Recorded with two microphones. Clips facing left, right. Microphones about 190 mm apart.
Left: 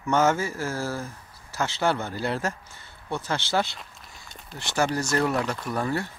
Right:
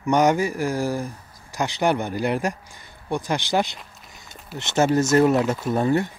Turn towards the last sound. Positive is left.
turn(degrees=-20)  # may be behind; listen again after turning